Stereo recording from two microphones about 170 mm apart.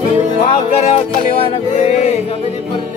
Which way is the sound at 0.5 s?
40° left (ahead or behind).